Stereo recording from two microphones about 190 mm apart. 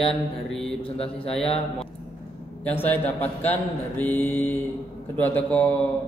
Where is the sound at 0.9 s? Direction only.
30° left (ahead or behind).